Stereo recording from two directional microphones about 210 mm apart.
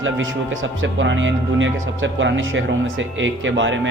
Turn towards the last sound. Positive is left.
turn(degrees=-65)  # may be behind; listen again after turning